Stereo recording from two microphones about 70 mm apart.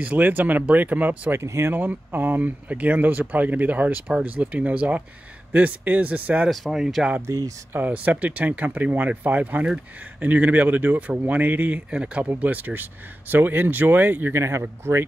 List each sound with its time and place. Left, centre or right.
0.0 s speech: right
1.3 s speech: right
6.5 s speech: centre
7.3 s speech: right
7.7 s speech: right